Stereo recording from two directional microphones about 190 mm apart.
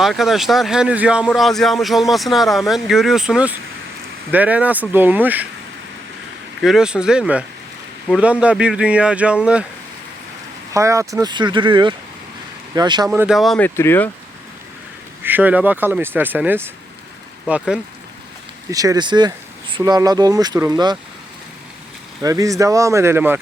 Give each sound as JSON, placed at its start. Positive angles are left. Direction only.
{"t": 0.0, "sound": "speech", "side_deg": 0}
{"t": 6.6, "sound": "speech", "side_deg": 0}
{"t": 10.7, "sound": "speech", "side_deg": -15}
{"t": 13.1, "sound": "speech", "side_deg": -5}
{"t": 13.7, "sound": "speech", "side_deg": 10}
{"t": 15.2, "sound": "speech", "side_deg": -10}
{"t": 18.7, "sound": "speech", "side_deg": -20}
{"t": 22.2, "sound": "speech", "side_deg": -15}